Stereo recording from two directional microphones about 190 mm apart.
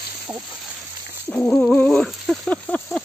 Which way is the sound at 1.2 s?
5° left (ahead or behind).